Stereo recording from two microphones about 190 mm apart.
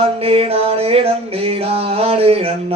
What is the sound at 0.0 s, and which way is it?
Music, 30° right (ahead or behind).